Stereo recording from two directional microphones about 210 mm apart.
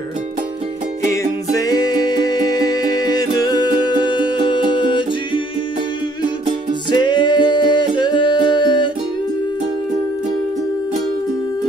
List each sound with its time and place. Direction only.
1.5 s music: 15° left (ahead or behind)
6.9 s music: 20° left (ahead or behind)